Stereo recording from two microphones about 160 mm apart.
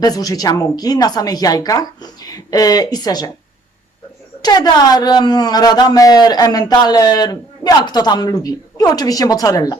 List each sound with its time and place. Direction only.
0.0 s speech: 25° left (ahead or behind)
4.4 s speech: 25° left (ahead or behind)